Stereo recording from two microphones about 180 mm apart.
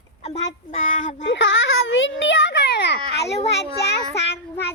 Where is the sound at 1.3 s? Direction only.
90° left; by 3.0 s 70° left (ahead or behind).